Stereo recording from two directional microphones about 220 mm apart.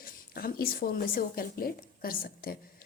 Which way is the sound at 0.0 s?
40° left (ahead or behind).